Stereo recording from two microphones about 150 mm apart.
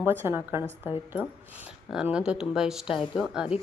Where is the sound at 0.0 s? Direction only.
15° right (ahead or behind).